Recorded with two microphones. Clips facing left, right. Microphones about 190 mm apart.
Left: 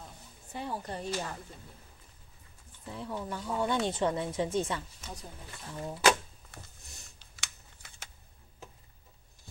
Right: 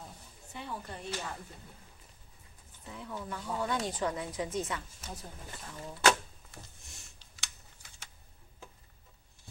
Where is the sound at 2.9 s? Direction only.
30° left (ahead or behind).